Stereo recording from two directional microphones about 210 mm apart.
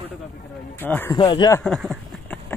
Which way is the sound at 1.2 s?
20° left (ahead or behind).